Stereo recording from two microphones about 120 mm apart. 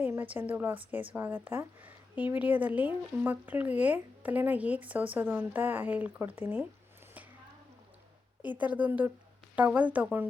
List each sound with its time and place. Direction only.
0.0 s a woman's voice: 15° right (ahead or behind)
8.4 s a woman's voice: 15° right (ahead or behind)